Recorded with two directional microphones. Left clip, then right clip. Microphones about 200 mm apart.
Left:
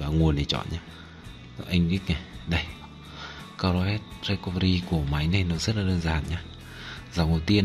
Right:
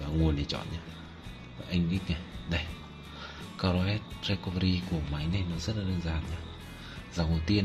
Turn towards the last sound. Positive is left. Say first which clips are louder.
# left 6 dB
turn(degrees=25)  # may be behind; listen again after turning